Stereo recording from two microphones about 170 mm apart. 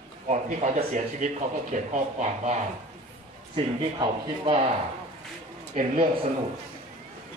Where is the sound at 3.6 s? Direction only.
30° right (ahead or behind).